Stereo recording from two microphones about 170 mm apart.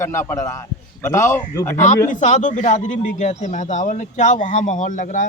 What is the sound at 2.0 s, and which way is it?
Speech, 50° left (ahead or behind).